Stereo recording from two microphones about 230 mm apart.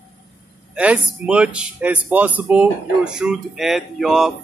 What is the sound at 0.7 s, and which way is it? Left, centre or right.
Speech, centre.